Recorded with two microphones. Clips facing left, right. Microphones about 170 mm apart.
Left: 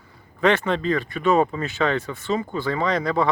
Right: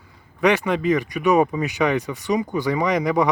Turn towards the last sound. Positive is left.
turn(degrees=-15)  # may be behind; listen again after turning